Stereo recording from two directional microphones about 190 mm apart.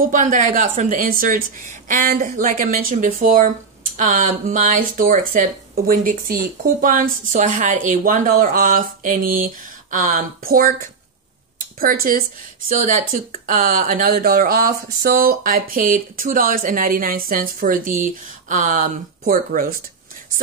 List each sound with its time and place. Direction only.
0.0 s a woman's voice: 40° right (ahead or behind)
11.8 s a woman's voice: 50° right (ahead or behind)